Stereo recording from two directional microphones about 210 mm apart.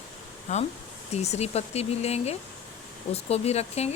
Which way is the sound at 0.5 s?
35° left (ahead or behind).